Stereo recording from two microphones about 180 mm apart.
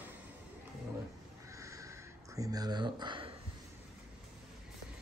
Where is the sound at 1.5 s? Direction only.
15° right (ahead or behind).